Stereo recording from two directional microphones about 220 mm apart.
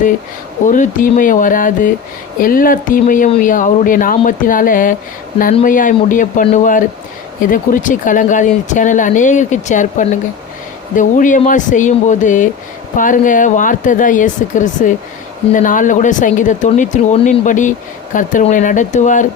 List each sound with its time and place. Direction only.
0.7 s speech: 35° left (ahead or behind)